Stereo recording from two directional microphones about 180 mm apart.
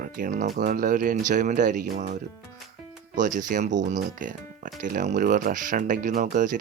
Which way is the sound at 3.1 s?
45° right (ahead or behind).